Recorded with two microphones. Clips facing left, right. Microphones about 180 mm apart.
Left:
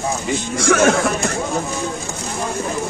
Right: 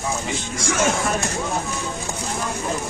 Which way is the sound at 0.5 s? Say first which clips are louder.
Left 7 dB; 70° left (ahead or behind).